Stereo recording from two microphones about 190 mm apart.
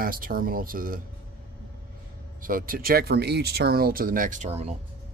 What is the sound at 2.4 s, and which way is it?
Speech, 50° right (ahead or behind).